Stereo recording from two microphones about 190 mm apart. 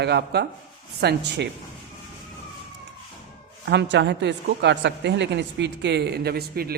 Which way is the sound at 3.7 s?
70° right (ahead or behind).